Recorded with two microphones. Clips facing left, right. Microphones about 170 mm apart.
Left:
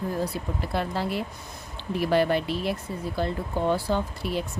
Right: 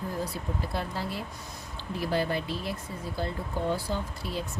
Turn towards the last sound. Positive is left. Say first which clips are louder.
# left 6 dB
turn(degrees=65)  # may be behind; listen again after turning